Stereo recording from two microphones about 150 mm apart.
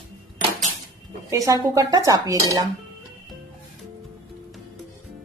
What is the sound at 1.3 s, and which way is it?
Dishes, 20° right (ahead or behind).